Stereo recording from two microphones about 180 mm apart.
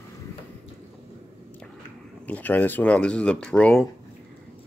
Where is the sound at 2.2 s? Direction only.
10° left (ahead or behind).